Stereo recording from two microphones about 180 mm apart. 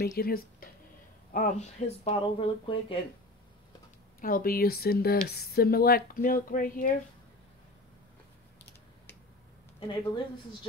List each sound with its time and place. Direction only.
0.0 s speech: 55° left (ahead or behind)
2.0 s speech: 30° left (ahead or behind)
4.2 s speech: 55° left (ahead or behind)
9.8 s speech: 30° left (ahead or behind)